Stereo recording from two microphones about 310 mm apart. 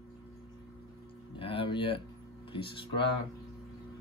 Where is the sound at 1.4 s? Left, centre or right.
Centre.